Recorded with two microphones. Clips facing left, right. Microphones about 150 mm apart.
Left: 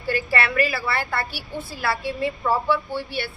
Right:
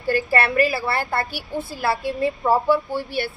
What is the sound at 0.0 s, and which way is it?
A woman's voice, 45° right (ahead or behind).